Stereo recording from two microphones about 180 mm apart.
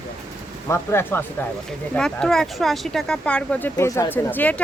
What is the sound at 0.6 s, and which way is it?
Speech, 15° left (ahead or behind).